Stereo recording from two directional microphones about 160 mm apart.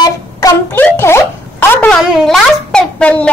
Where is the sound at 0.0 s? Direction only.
15° left (ahead or behind).